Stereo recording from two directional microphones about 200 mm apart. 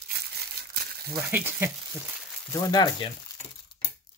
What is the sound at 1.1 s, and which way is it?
Frying, 10° right (ahead or behind).